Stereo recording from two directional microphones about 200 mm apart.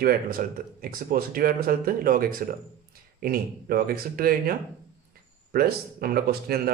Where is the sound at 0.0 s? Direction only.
45° right (ahead or behind).